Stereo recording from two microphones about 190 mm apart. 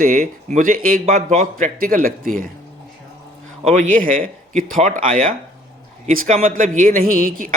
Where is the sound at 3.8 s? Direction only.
45° right (ahead or behind).